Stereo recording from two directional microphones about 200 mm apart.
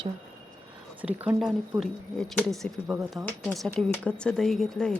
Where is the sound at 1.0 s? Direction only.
5° right (ahead or behind).